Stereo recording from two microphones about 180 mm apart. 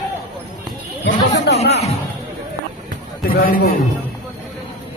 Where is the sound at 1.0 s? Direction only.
75° left (ahead or behind).